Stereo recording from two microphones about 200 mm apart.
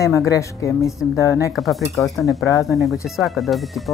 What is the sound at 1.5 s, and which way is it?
Speech, centre (ahead or behind).